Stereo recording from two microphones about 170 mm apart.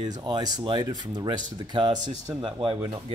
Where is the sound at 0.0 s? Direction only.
25° right (ahead or behind).